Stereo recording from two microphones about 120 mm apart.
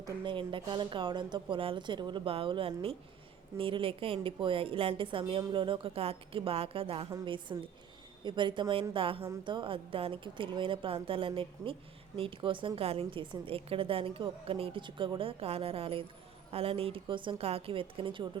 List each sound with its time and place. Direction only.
0.3 s a woman's voice: 45° right (ahead or behind)